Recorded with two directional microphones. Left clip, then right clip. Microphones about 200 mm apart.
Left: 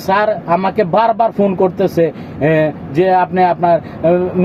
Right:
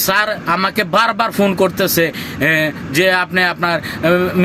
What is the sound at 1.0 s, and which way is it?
Speech, 50° right (ahead or behind).